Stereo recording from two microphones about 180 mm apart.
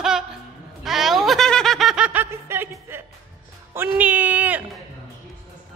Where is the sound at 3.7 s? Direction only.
10° right (ahead or behind).